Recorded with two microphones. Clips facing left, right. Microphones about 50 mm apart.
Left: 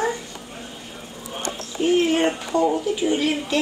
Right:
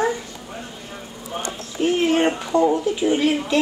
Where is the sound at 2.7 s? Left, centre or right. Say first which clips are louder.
Right 2 dB; centre.